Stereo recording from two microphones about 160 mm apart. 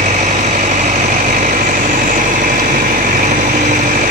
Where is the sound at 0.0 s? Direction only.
50° right (ahead or behind).